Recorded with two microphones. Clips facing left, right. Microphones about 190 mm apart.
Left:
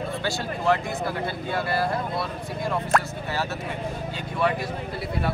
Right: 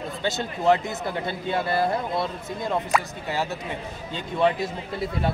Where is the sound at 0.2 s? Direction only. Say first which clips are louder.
Right 2 dB; 20° right (ahead or behind).